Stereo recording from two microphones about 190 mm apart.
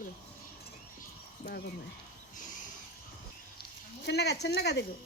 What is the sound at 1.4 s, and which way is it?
Speech, 60° left (ahead or behind).